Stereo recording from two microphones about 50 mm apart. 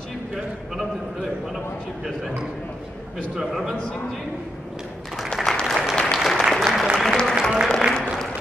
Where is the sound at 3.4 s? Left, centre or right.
Centre.